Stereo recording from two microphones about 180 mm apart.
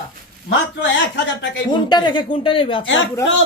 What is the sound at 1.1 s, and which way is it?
Speech, 90° left.